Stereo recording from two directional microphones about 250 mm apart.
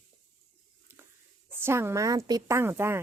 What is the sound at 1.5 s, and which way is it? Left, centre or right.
A woman's voice, centre.